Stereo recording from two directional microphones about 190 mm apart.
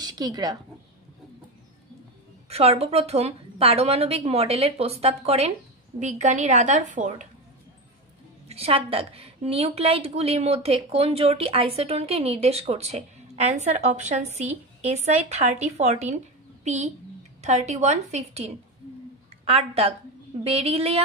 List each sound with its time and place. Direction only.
0.0 s a woman's voice: 20° right (ahead or behind)
2.5 s a woman's voice: 30° right (ahead or behind)
8.5 s a woman's voice: 30° right (ahead or behind)